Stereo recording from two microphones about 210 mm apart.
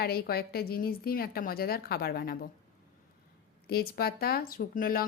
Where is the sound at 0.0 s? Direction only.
45° left (ahead or behind).